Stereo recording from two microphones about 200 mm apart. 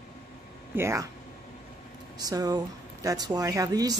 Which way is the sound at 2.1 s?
20° right (ahead or behind).